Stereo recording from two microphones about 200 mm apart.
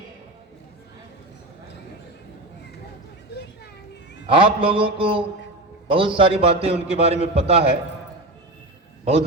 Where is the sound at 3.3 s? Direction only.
55° left (ahead or behind).